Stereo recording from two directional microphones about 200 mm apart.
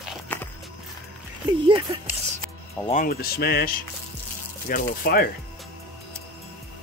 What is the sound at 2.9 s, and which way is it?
Speech, 45° left (ahead or behind).